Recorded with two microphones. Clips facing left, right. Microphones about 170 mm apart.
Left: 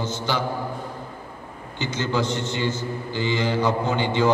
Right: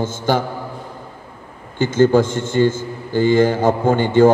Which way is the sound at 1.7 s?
50° right (ahead or behind).